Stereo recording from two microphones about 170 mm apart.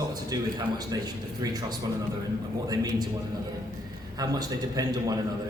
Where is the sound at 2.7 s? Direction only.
20° right (ahead or behind).